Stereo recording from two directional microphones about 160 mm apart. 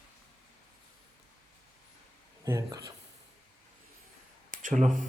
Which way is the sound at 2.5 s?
20° right (ahead or behind).